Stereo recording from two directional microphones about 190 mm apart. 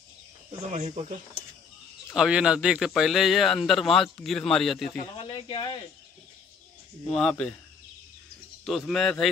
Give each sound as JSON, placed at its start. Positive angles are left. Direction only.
{"t": 0.5, "sound": "speech", "side_deg": -35}
{"t": 2.1, "sound": "a man's voice", "side_deg": -5}
{"t": 5.1, "sound": "speech", "side_deg": 30}
{"t": 7.1, "sound": "a man's voice", "side_deg": 5}
{"t": 8.6, "sound": "a man's voice", "side_deg": 0}